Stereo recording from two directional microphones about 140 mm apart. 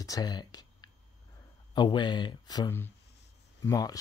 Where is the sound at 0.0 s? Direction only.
25° left (ahead or behind).